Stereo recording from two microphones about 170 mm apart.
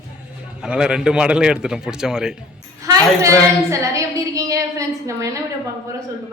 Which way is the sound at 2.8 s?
20° right (ahead or behind).